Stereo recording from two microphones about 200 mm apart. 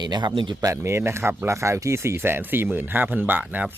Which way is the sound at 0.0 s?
20° right (ahead or behind).